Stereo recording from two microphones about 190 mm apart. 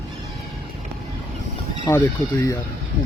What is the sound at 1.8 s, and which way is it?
Speech, 15° left (ahead or behind).